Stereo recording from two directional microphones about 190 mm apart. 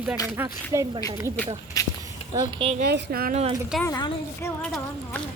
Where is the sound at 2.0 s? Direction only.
20° right (ahead or behind).